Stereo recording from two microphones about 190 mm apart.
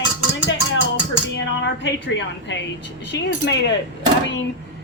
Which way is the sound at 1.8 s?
70° left (ahead or behind).